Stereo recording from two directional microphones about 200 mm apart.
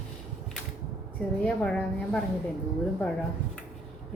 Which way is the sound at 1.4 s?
5° left (ahead or behind).